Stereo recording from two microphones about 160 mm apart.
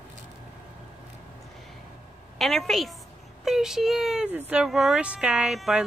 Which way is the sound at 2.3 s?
Centre (ahead or behind).